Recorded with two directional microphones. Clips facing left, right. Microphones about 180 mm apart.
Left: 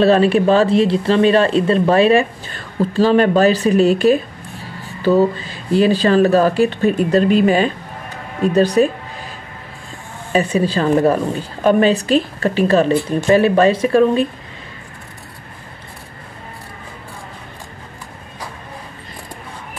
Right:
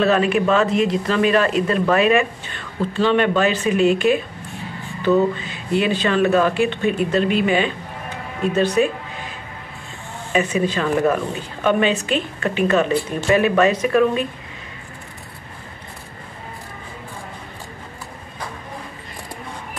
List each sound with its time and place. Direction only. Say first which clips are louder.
0.0 s speech: left 5 dB; 30° left (ahead or behind)
10.3 s speech: left 3 dB; 35° left (ahead or behind)